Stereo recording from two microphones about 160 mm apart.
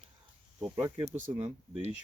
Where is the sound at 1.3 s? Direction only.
45° right (ahead or behind).